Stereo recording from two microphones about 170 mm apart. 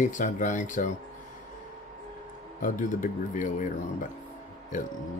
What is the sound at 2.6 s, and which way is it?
Speech, 50° left (ahead or behind).